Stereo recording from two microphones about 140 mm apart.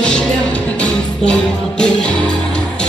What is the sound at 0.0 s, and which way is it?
Music, 5° left (ahead or behind).